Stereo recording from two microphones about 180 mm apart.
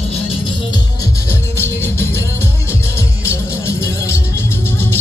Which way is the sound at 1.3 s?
15° left (ahead or behind).